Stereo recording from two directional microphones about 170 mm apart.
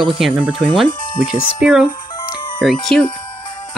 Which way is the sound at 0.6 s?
5° left (ahead or behind).